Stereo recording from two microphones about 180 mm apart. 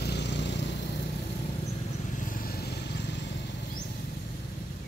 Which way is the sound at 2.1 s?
50° left (ahead or behind).